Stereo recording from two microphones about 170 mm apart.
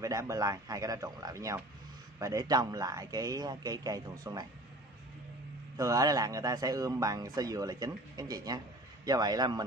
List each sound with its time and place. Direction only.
0.0 s speech: 20° right (ahead or behind)
5.8 s speech: 20° right (ahead or behind)